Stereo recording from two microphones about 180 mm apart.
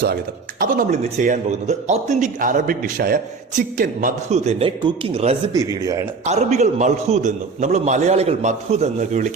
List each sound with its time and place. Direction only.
0.6 s a man's voice: 45° right (ahead or behind)
5.5 s a man's voice: 20° right (ahead or behind)
6.2 s a man's voice: 40° right (ahead or behind)